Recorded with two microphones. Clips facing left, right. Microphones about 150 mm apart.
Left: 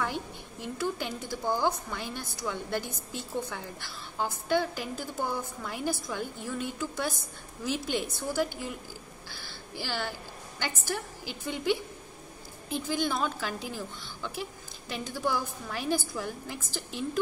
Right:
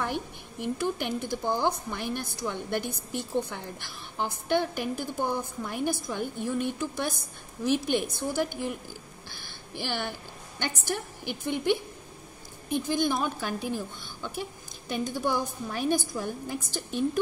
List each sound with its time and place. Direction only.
0.0 s a woman's voice: 20° right (ahead or behind)
8.4 s a woman's voice: 20° right (ahead or behind)